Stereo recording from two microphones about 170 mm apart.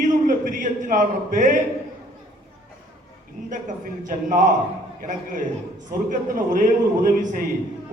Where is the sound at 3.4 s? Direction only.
50° right (ahead or behind).